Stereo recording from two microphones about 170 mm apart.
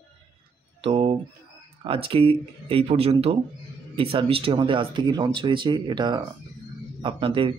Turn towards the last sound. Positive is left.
turn(degrees=-30)  # may be behind; listen again after turning